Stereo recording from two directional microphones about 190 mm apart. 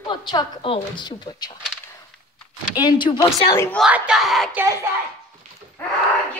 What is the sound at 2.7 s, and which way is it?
Speech, 25° left (ahead or behind).